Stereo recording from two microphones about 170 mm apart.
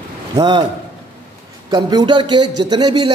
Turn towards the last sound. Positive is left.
turn(degrees=-25)  # may be behind; listen again after turning